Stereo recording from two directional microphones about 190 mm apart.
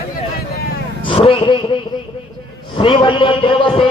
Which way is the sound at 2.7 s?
25° left (ahead or behind).